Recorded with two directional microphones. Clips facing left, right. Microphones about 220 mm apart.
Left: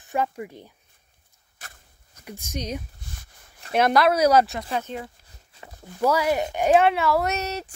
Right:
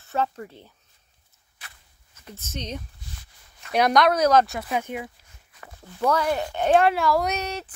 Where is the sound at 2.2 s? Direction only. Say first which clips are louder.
Left 3 dB; 15° left (ahead or behind).